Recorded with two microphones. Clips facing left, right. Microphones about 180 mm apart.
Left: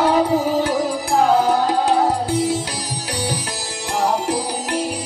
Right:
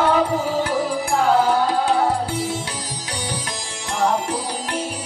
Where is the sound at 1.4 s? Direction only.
40° left (ahead or behind).